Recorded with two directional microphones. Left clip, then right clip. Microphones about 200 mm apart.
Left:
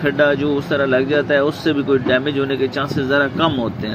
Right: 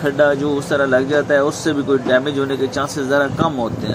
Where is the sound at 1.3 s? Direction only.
Centre (ahead or behind).